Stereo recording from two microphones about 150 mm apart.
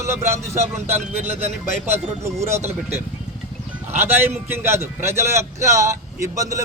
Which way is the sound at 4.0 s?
15° right (ahead or behind).